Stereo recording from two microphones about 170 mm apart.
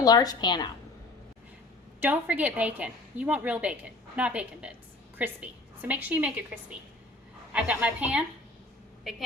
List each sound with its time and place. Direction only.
0.0 s a woman's voice: 20° left (ahead or behind)
2.0 s a woman's voice: 10° right (ahead or behind)